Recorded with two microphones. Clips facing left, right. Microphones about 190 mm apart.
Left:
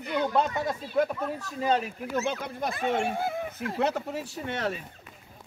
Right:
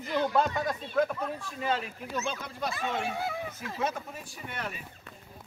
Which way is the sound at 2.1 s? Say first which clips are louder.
Left 5 dB; 55° left (ahead or behind).